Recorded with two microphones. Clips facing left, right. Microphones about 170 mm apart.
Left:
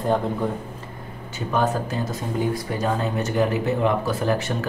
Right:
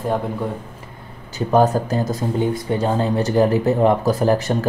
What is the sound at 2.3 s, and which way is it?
Speech, 25° right (ahead or behind).